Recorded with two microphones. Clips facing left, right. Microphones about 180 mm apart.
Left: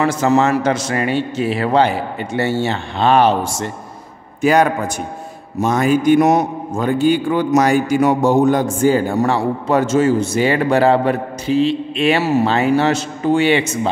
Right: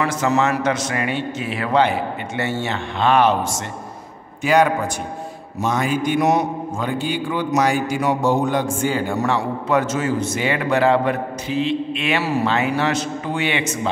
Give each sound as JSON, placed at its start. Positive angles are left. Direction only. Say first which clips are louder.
{"t": 0.0, "sound": "a man's voice", "louder": "left 4 dB", "side_deg": 30}
{"t": 4.4, "sound": "a man's voice", "louder": "left 3 dB", "side_deg": 45}